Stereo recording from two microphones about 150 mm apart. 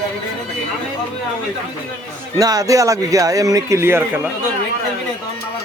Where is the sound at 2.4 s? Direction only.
25° right (ahead or behind).